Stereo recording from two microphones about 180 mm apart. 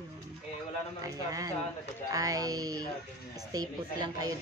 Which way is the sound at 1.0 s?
20° right (ahead or behind).